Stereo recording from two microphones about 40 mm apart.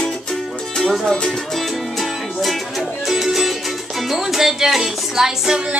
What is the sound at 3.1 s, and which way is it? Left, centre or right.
Music, centre.